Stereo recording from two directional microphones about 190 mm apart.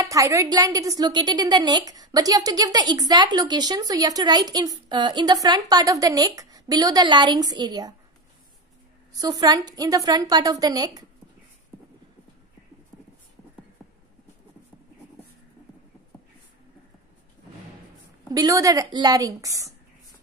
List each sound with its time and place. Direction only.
0.0 s a woman's voice: 15° right (ahead or behind)
9.2 s a woman's voice: 20° right (ahead or behind)
18.3 s a woman's voice: 20° right (ahead or behind)